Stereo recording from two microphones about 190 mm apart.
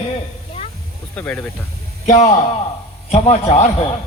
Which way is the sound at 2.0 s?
35° left (ahead or behind).